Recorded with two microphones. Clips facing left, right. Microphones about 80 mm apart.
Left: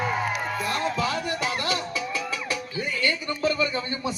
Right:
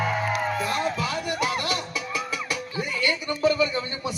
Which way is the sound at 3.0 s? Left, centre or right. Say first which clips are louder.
Right 3 dB; centre.